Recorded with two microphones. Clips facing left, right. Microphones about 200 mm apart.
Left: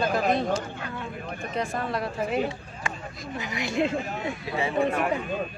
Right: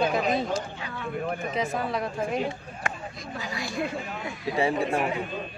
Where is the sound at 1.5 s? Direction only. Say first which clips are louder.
Left 3 dB; centre (ahead or behind).